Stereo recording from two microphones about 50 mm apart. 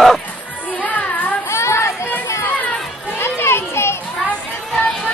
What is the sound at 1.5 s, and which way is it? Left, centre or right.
Chatter, left.